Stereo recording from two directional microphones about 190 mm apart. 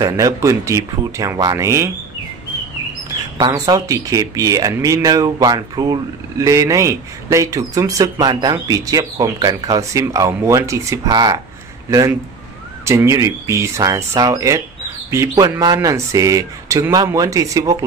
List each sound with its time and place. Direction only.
0.0 s speech: 15° right (ahead or behind)
3.3 s speech: 20° right (ahead or behind)